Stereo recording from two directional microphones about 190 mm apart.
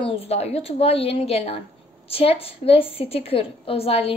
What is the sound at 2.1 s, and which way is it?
Child singing, 30° left (ahead or behind).